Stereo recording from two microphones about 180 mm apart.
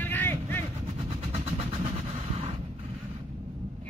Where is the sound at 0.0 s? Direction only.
10° left (ahead or behind).